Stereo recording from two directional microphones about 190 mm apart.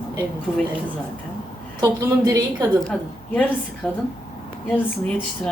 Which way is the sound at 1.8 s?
20° right (ahead or behind).